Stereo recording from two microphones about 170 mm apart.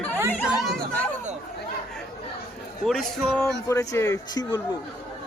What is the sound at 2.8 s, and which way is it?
Speech, 5° left (ahead or behind).